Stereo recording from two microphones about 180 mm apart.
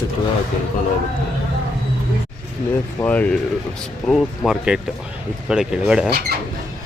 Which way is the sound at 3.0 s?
10° left (ahead or behind).